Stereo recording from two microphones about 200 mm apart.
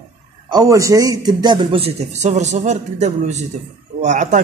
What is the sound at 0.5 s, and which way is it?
A man's voice, 15° right (ahead or behind).